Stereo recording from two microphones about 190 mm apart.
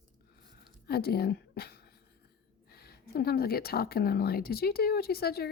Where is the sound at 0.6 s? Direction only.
55° left (ahead or behind).